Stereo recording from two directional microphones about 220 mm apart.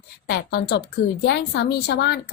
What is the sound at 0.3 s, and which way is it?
A woman's voice, 45° left (ahead or behind).